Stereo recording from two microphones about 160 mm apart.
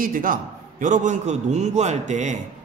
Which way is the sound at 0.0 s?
60° right (ahead or behind).